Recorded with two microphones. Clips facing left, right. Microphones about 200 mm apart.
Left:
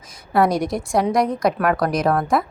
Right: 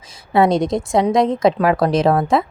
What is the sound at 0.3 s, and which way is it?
Speech, 25° right (ahead or behind).